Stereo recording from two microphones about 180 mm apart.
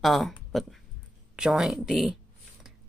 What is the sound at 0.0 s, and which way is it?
Speech, centre (ahead or behind).